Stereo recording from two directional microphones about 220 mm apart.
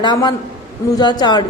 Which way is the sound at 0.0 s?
20° left (ahead or behind).